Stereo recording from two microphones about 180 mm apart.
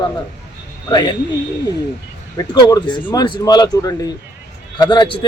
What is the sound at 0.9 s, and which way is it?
Speech, 25° left (ahead or behind).